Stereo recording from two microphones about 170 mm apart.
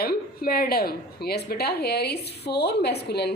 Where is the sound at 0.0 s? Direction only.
65° left (ahead or behind).